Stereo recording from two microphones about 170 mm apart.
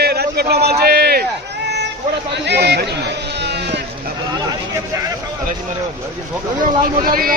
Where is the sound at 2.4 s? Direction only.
80° right.